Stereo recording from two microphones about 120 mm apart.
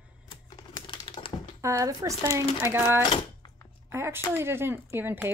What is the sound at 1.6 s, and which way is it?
Speech, 25° right (ahead or behind).